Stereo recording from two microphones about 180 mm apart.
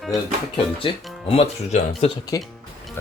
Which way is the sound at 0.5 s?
30° left (ahead or behind).